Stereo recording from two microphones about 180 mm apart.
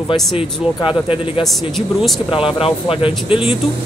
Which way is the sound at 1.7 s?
Centre (ahead or behind).